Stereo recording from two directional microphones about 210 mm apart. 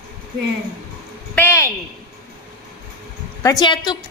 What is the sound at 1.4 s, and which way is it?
Speech, 10° left (ahead or behind).